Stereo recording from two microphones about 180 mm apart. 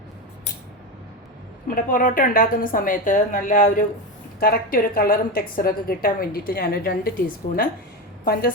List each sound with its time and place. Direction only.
1.6 s a woman's voice: 50° left (ahead or behind)
8.2 s a woman's voice: 55° left (ahead or behind)